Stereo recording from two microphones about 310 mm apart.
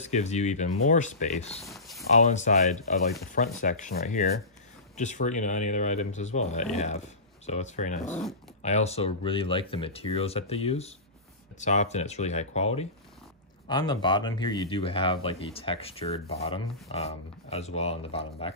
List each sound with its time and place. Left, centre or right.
0.0 s speech: left
1.6 s a sound: centre
2.2 s speech: left